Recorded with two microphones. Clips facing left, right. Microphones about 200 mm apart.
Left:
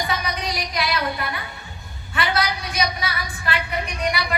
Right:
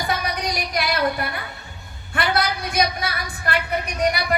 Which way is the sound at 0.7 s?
50° right (ahead or behind).